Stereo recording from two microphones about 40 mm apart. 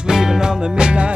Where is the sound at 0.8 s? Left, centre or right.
Right.